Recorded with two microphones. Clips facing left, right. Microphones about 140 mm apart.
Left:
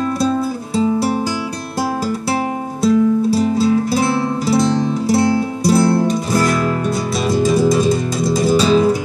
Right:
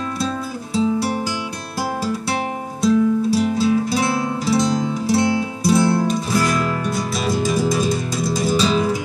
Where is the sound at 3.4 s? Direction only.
35° left (ahead or behind).